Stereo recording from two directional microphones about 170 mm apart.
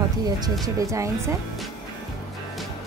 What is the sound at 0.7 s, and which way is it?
Speech, 20° right (ahead or behind).